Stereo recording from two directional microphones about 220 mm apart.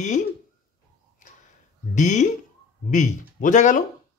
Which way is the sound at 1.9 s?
35° left (ahead or behind).